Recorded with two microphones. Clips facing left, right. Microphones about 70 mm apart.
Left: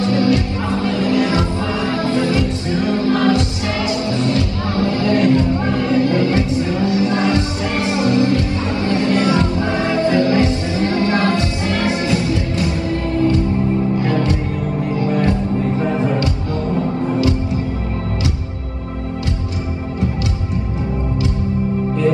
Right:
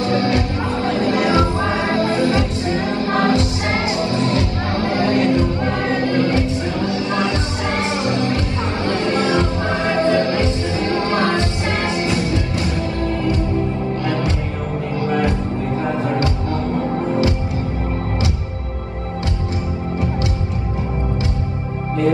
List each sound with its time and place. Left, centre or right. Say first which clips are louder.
0.0 s music: left 2 dB; right